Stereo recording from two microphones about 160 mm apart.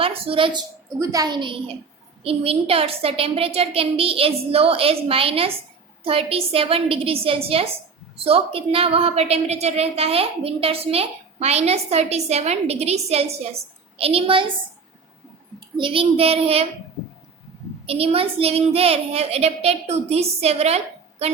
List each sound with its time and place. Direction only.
0.0 s a woman's voice: 35° right (ahead or behind)
0.9 s a woman's voice: 20° right (ahead or behind)
15.8 s a woman's voice: 35° right (ahead or behind)
17.8 s a woman's voice: 35° right (ahead or behind)